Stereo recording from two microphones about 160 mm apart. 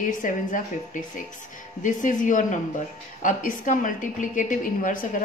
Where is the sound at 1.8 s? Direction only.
50° left (ahead or behind).